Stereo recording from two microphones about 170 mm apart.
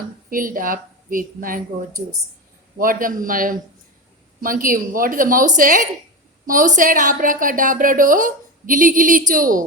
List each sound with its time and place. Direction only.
0.3 s a woman's voice: 55° right (ahead or behind)
2.7 s a woman's voice: 55° right (ahead or behind)